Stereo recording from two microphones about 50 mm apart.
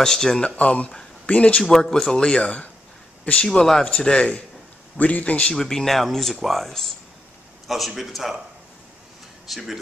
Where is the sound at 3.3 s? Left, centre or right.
Centre.